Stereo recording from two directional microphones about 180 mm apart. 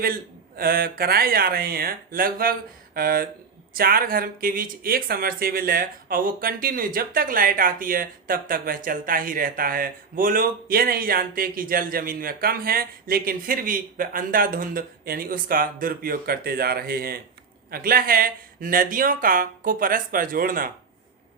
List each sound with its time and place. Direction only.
0.0 s speech: 55° right (ahead or behind)